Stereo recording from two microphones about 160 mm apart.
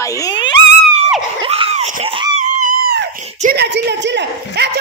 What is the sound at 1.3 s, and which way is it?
Screaming, 35° right (ahead or behind).